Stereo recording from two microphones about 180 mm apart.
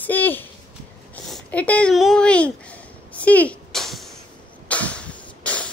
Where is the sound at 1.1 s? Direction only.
10° left (ahead or behind).